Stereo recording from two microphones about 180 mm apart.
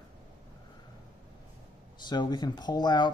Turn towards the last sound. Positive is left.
turn(degrees=25)  # may be behind; listen again after turning